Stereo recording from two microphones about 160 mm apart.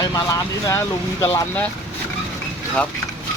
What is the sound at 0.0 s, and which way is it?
Speech, 20° left (ahead or behind).